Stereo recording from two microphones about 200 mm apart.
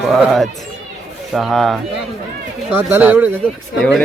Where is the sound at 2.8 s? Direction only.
10° right (ahead or behind).